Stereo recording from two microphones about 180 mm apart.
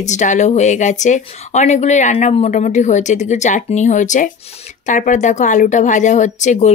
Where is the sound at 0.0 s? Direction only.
40° left (ahead or behind).